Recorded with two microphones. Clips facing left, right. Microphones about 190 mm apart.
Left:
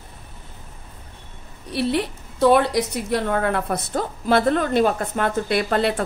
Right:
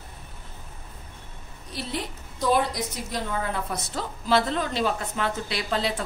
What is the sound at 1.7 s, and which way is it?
A woman's voice, 65° left (ahead or behind).